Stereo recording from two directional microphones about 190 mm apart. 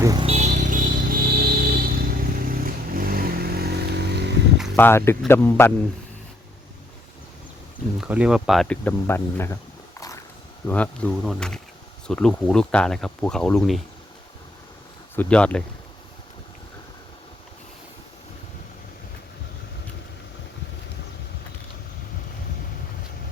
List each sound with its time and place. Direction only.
0.0 s speech: 20° right (ahead or behind)
0.3 s music: 35° right (ahead or behind); by 4.2 s 55° right (ahead or behind)
4.8 s speech: 15° left (ahead or behind)
7.9 s speech: 5° right (ahead or behind); by 9.6 s 10° left (ahead or behind)
10.7 s speech: 5° left (ahead or behind)
15.1 s speech: 10° left (ahead or behind)